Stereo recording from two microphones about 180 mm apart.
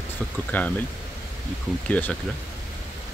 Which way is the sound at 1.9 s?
10° left (ahead or behind).